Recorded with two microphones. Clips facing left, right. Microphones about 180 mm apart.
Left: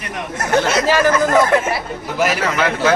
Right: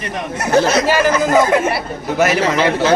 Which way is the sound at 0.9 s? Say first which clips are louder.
Left 2 dB; 10° right (ahead or behind).